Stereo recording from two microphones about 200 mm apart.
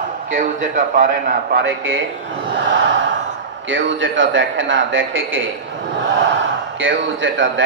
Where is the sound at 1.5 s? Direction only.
65° right (ahead or behind).